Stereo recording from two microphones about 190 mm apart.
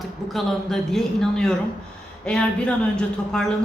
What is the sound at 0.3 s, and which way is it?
Speech, centre (ahead or behind).